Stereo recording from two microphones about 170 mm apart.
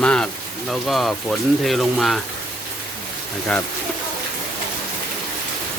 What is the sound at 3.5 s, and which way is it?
Speech, 5° left (ahead or behind).